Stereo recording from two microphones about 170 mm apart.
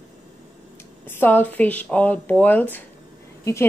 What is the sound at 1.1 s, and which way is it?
A woman's voice, 10° left (ahead or behind).